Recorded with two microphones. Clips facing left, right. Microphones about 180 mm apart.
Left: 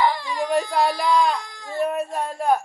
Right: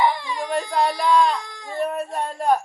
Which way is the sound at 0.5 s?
5° left (ahead or behind).